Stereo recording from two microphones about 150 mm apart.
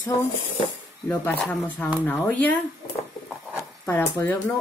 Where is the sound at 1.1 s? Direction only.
10° left (ahead or behind).